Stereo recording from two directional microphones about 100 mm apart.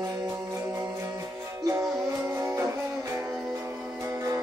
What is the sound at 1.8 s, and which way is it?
Music, centre (ahead or behind).